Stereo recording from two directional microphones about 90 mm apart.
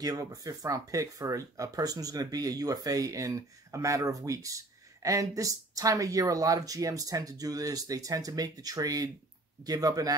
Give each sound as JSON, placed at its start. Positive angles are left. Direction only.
{"t": 0.0, "sound": "speech", "side_deg": -45}